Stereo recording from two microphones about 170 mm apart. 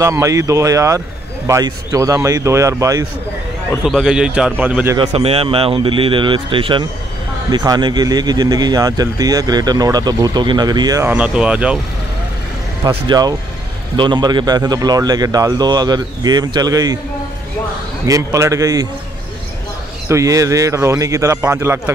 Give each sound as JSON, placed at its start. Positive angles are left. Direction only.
{"t": 0.0, "sound": "speech", "side_deg": -20}
{"t": 3.8, "sound": "speech", "side_deg": -5}
{"t": 4.9, "sound": "a man's voice", "side_deg": -35}
{"t": 11.1, "sound": "speech", "side_deg": -5}
{"t": 12.8, "sound": "speech", "side_deg": -25}
{"t": 18.0, "sound": "speech", "side_deg": -20}
{"t": 20.1, "sound": "speech", "side_deg": -20}